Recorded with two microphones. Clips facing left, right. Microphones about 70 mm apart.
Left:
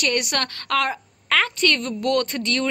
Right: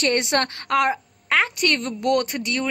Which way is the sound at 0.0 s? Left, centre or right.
Right.